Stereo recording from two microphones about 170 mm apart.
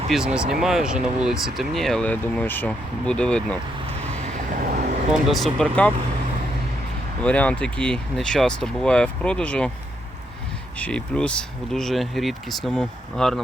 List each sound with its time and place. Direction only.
0.1 s speech: 5° right (ahead or behind)
4.1 s vehicle: 50° right (ahead or behind)
5.1 s speech: centre (ahead or behind)
7.2 s speech: 10° left (ahead or behind)
10.8 s speech: 5° left (ahead or behind)